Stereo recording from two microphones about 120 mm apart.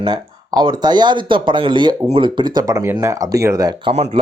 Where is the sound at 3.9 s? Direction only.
55° right (ahead or behind).